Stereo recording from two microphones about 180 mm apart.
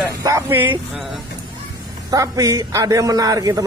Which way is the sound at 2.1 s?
20° right (ahead or behind).